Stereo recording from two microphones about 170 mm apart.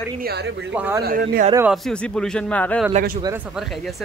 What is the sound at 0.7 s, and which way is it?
Speech, 10° right (ahead or behind).